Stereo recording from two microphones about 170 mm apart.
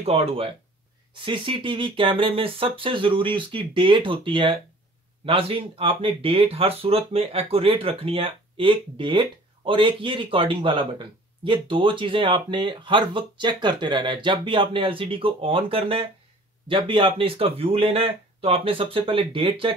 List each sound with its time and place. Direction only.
0.0 s speech: 35° right (ahead or behind)